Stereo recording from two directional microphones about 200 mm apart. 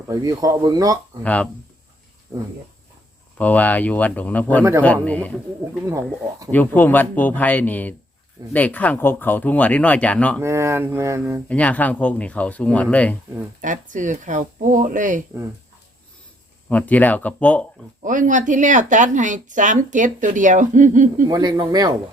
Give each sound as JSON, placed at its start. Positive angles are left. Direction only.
{"t": 0.1, "sound": "speech", "side_deg": -20}
{"t": 1.2, "sound": "speech", "side_deg": 5}
{"t": 3.3, "sound": "speech", "side_deg": 10}
{"t": 5.8, "sound": "speech", "side_deg": -15}
{"t": 6.5, "sound": "speech", "side_deg": 10}
{"t": 10.4, "sound": "speech", "side_deg": -15}
{"t": 11.4, "sound": "speech", "side_deg": 5}
{"t": 13.6, "sound": "speech", "side_deg": -40}
{"t": 16.6, "sound": "speech", "side_deg": 5}
{"t": 18.0, "sound": "speech", "side_deg": -40}
{"t": 21.2, "sound": "speech", "side_deg": -15}